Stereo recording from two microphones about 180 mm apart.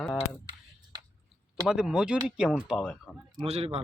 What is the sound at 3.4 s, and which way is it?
Speech, 35° right (ahead or behind).